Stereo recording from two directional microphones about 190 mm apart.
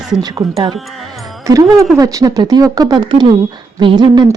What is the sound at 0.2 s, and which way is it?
A woman's voice, 20° right (ahead or behind).